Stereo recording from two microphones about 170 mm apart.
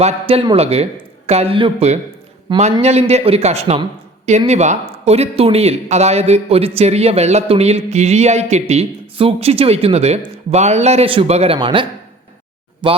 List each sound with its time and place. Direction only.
0.0 s speech: 35° right (ahead or behind)
2.8 s speech: 40° right (ahead or behind)